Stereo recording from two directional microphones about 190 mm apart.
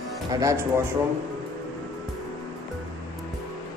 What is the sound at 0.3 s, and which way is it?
Speech, 15° right (ahead or behind).